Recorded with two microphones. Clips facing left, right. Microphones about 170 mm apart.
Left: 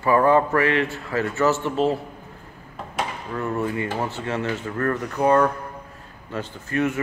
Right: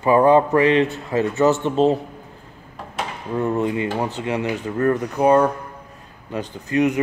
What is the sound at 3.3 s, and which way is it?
Speech, 20° right (ahead or behind).